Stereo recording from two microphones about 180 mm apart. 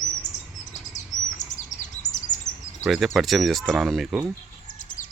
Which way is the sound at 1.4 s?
45° left (ahead or behind).